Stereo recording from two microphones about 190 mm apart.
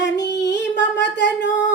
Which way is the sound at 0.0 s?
65° left (ahead or behind).